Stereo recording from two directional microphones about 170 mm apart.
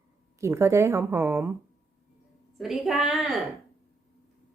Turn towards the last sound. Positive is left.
turn(degrees=0)  # may be behind; listen again after turning